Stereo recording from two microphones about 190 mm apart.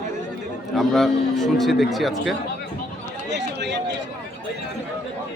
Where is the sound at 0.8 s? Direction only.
Centre (ahead or behind).